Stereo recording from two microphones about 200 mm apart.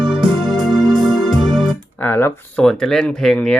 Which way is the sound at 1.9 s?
10° left (ahead or behind).